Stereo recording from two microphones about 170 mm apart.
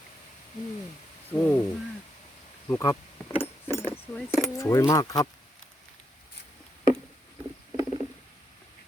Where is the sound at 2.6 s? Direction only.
20° left (ahead or behind).